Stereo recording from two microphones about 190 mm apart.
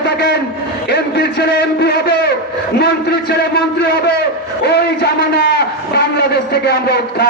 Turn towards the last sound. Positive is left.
turn(degrees=60)  # may be behind; listen again after turning